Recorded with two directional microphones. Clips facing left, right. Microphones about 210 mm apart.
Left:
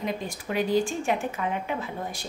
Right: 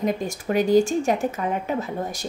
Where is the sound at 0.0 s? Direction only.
45° right (ahead or behind).